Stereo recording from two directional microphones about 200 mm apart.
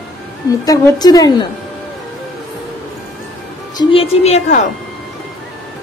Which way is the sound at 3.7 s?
25° left (ahead or behind).